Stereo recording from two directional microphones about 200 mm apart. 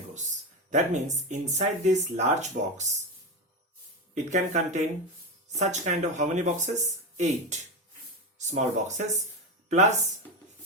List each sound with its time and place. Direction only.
0.7 s speech: 35° right (ahead or behind)
4.1 s speech: 35° right (ahead or behind)